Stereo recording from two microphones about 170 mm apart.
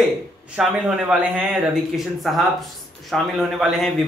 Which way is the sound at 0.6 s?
5° right (ahead or behind).